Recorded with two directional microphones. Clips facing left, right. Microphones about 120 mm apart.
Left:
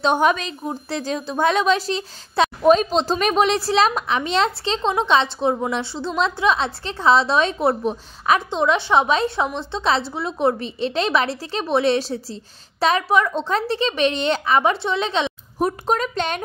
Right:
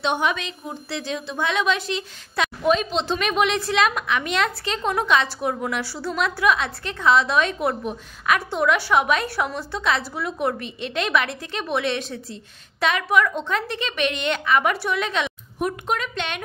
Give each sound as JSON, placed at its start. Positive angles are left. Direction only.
{"t": 0.0, "sound": "a woman's voice", "side_deg": 40}